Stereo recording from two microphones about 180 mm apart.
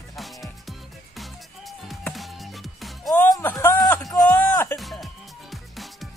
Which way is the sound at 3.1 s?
15° left (ahead or behind).